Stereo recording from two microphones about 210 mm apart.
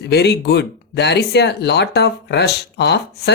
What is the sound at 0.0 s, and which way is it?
Speech, 55° left (ahead or behind).